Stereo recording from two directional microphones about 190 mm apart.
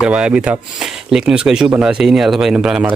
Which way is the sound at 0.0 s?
5° right (ahead or behind).